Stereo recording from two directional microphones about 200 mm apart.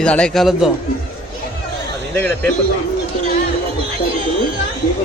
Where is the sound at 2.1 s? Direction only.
10° left (ahead or behind).